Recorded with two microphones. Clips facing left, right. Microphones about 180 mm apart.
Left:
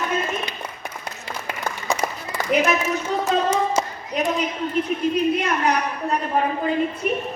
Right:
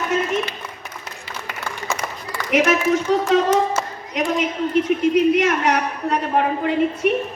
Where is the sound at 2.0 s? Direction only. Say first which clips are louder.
Left 4 dB; 40° left (ahead or behind).